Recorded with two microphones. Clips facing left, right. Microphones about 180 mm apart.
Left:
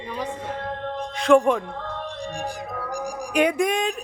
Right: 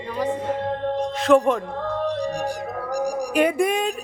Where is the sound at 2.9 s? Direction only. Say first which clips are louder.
Right 8 dB; 35° right (ahead or behind).